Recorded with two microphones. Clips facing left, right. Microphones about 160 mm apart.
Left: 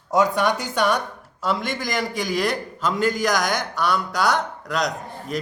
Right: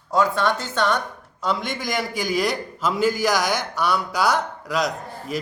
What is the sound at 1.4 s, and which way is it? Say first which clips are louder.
A man's voice: left 1 dB; centre (ahead or behind).